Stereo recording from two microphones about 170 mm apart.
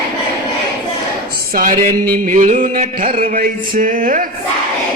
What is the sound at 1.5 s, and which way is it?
Music, 55° right (ahead or behind).